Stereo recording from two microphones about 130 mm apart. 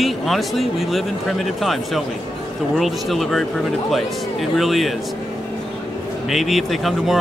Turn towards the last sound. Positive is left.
turn(degrees=0)  # may be behind; listen again after turning